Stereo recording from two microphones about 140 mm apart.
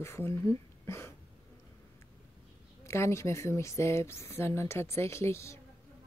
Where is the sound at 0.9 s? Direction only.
20° left (ahead or behind).